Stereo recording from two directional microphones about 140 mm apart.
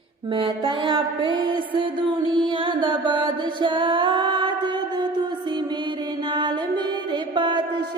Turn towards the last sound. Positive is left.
turn(degrees=-35)  # may be behind; listen again after turning